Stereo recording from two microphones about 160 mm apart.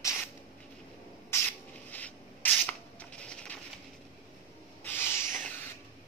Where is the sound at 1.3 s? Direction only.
10° left (ahead or behind).